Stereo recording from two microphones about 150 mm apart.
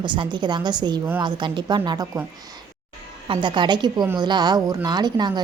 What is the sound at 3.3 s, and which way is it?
A woman's voice, 30° right (ahead or behind).